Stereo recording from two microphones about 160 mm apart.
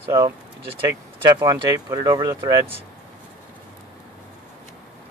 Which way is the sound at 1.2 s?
25° right (ahead or behind).